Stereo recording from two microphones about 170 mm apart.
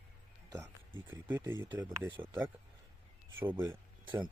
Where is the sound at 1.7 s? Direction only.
25° right (ahead or behind).